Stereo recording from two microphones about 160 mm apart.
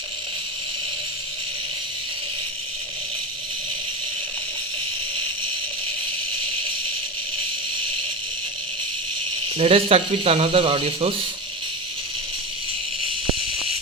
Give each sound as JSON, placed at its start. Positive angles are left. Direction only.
{"t": 9.6, "sound": "speech", "side_deg": -35}